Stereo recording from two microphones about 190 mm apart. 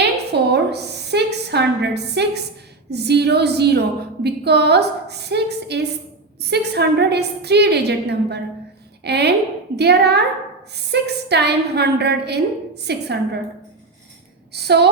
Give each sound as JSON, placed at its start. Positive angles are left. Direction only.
{"t": 0.0, "sound": "a sound", "side_deg": -60}
{"t": 2.9, "sound": "a woman's voice", "side_deg": -60}
{"t": 14.5, "sound": "a woman's voice", "side_deg": -60}